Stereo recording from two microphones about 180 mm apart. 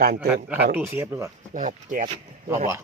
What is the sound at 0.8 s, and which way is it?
Speech, 10° right (ahead or behind).